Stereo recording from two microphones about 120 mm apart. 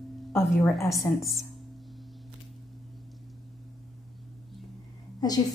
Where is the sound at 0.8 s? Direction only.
25° left (ahead or behind).